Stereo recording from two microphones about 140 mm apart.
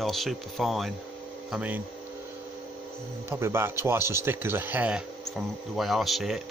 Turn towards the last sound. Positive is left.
turn(degrees=0)  # may be behind; listen again after turning